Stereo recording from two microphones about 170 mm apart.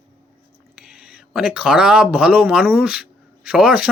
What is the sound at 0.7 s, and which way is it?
Speech, 5° right (ahead or behind).